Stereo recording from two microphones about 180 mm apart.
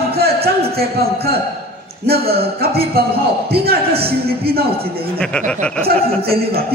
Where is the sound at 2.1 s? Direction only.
60° right (ahead or behind).